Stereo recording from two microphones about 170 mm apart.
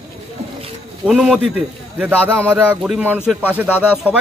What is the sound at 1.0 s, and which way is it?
Speech, 5° right (ahead or behind).